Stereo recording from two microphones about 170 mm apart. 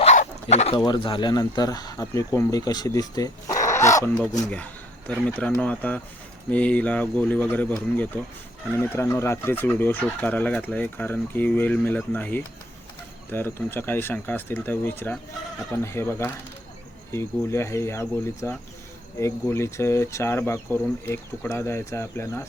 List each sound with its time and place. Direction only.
0.0 s dog: 40° left (ahead or behind)
0.9 s speech: 30° left (ahead or behind)
4.2 s speech: 5° left (ahead or behind)